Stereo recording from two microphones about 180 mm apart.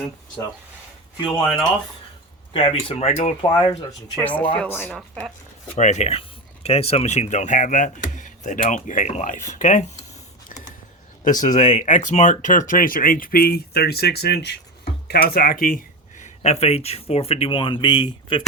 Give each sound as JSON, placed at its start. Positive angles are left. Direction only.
{"t": 2.5, "sound": "speech", "side_deg": 30}
{"t": 4.1, "sound": "speech", "side_deg": 10}
{"t": 5.7, "sound": "speech", "side_deg": 40}
{"t": 10.5, "sound": "a sound", "side_deg": 45}
{"t": 11.2, "sound": "speech", "side_deg": 45}